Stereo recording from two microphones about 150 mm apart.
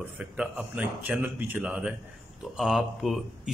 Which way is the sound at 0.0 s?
5° right (ahead or behind).